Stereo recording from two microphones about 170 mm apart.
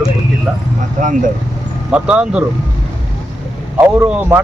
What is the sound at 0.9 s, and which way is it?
Speech, 50° right (ahead or behind).